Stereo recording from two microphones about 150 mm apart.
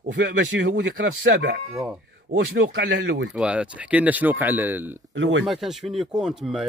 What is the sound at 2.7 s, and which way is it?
Speech, 90° right.